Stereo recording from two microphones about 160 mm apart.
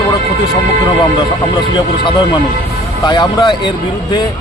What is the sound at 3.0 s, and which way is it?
Speech, 25° left (ahead or behind).